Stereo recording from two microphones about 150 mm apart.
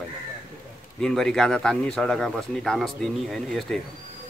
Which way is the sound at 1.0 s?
5° left (ahead or behind).